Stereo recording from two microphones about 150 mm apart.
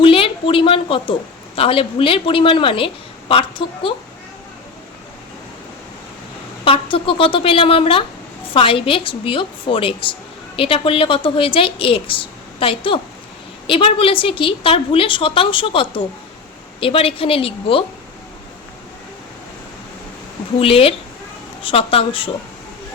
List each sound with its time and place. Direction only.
0.0 s a sound: 35° left (ahead or behind)
1.5 s a woman's voice: 40° left (ahead or behind)
6.7 s a woman's voice: 35° left (ahead or behind)
20.6 s a woman's voice: 40° left (ahead or behind)